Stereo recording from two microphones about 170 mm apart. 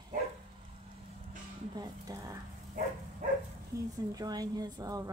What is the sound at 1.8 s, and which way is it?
Speech, 20° right (ahead or behind).